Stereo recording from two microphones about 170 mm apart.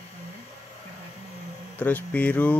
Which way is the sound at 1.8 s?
10° left (ahead or behind).